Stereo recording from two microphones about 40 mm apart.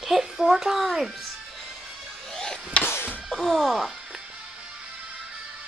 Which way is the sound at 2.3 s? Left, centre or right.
Centre.